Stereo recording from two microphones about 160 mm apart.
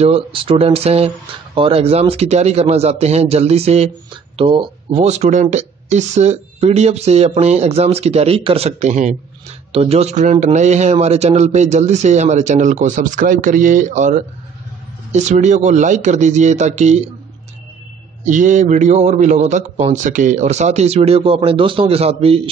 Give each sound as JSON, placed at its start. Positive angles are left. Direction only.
{"t": 0.0, "sound": "a man's voice", "side_deg": -35}
{"t": 18.2, "sound": "a man's voice", "side_deg": -50}